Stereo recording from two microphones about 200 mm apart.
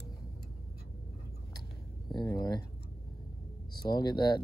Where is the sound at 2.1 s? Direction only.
20° left (ahead or behind).